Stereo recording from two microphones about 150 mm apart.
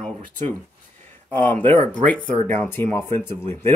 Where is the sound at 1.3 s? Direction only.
10° left (ahead or behind).